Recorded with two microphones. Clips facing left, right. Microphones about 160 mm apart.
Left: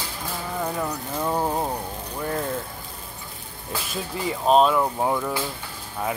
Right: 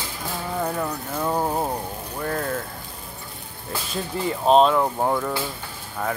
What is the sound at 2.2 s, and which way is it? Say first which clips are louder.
Speech: right 1 dB; 15° left (ahead or behind).